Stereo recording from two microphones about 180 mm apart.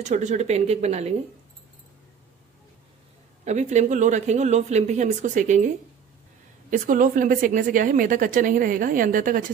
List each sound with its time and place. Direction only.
0.0 s speech: 40° right (ahead or behind)
3.4 s speech: 40° right (ahead or behind)
6.7 s a woman's voice: 45° right (ahead or behind)